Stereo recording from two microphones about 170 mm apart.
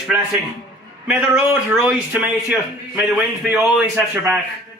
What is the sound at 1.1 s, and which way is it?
A man's voice, 5° right (ahead or behind).